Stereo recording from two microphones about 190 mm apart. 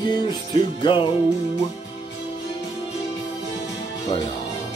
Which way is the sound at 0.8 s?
25° left (ahead or behind).